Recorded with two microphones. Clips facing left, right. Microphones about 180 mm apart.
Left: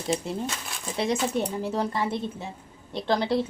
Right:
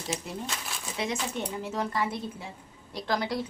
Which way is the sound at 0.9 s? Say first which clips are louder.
Left 7 dB; 35° left (ahead or behind).